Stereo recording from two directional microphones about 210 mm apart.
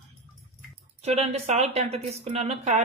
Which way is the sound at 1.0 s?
30° right (ahead or behind).